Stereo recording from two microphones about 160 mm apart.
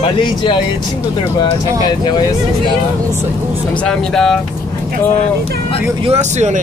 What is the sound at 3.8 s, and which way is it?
Speech, 5° left (ahead or behind).